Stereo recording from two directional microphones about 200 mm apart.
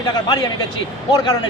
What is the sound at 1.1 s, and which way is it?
Speech, 20° left (ahead or behind).